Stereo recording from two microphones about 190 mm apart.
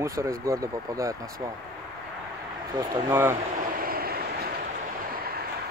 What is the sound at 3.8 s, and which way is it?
Vehicle, 50° right (ahead or behind).